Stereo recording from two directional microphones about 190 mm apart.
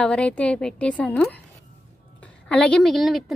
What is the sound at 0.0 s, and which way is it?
A woman's voice, 5° left (ahead or behind).